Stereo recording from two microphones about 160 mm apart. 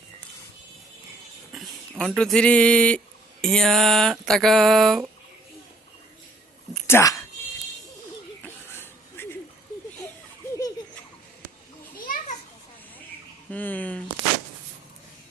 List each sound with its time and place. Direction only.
1.5 s speech: centre (ahead or behind)
3.4 s a sound: 5° left (ahead or behind)
6.8 s speech: 20° left (ahead or behind)
8.4 s a sound: 15° left (ahead or behind)
12.0 s children playing: 55° left (ahead or behind)
13.5 s speech: 10° left (ahead or behind)